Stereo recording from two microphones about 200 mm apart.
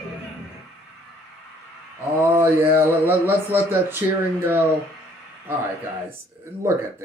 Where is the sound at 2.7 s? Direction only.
10° right (ahead or behind).